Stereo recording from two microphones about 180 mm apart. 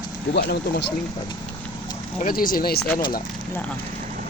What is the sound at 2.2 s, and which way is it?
Speech, 50° left (ahead or behind).